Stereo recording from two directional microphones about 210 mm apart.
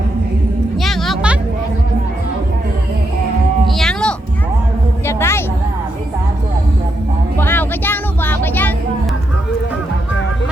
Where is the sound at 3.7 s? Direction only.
Centre (ahead or behind).